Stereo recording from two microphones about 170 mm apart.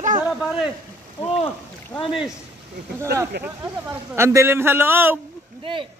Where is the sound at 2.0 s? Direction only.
30° left (ahead or behind).